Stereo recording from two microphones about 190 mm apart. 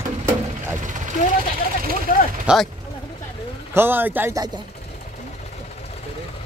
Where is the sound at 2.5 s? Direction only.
5° right (ahead or behind).